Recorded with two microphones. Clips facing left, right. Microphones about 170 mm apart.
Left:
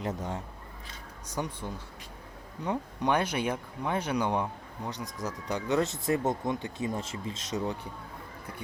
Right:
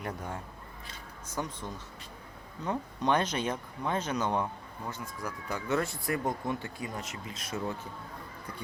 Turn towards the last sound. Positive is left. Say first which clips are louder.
# left 3 dB
turn(degrees=25)  # may be behind; listen again after turning